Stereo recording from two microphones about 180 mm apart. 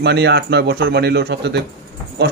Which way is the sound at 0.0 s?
70° right (ahead or behind).